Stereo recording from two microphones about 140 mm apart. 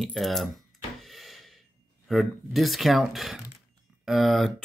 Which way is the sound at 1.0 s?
Centre (ahead or behind).